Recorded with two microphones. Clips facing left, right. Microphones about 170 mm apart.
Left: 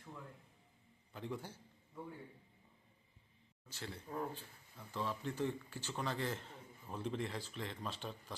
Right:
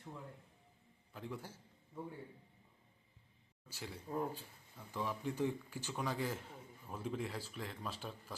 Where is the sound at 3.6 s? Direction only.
10° right (ahead or behind).